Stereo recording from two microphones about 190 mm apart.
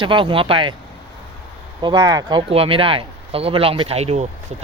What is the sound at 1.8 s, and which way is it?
Speech, 20° right (ahead or behind).